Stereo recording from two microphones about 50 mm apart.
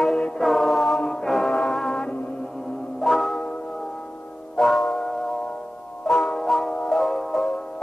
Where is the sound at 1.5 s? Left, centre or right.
Centre.